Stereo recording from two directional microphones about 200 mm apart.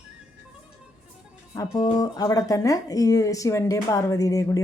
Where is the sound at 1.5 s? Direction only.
20° left (ahead or behind).